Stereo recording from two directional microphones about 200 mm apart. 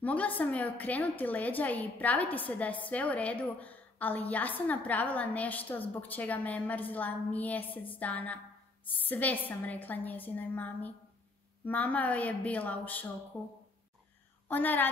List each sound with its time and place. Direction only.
0.0 s a woman's voice: 5° left (ahead or behind)
14.5 s a woman's voice: 10° left (ahead or behind)